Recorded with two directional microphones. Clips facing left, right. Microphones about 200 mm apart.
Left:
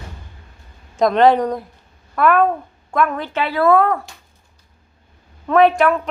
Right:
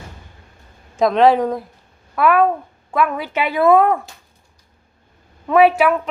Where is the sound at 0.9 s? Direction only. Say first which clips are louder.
Even; centre (ahead or behind); by 4.0 s 15° right (ahead or behind).